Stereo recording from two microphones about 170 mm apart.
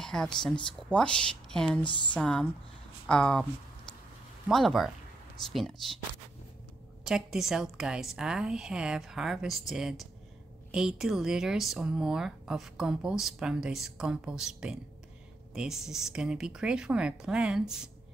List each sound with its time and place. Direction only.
0.0 s speech: 5° left (ahead or behind)
1.7 s speech: 30° left (ahead or behind)
2.1 s speech: 5° left (ahead or behind)
4.5 s speech: centre (ahead or behind)
7.1 s speech: centre (ahead or behind)